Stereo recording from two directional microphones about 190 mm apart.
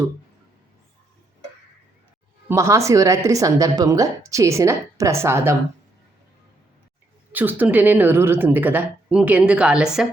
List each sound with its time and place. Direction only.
2.5 s a woman's voice: 15° right (ahead or behind)
7.3 s a woman's voice: 10° right (ahead or behind)